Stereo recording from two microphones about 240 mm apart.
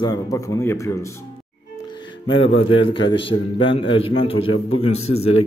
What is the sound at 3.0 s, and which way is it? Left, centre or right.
A man's voice, left.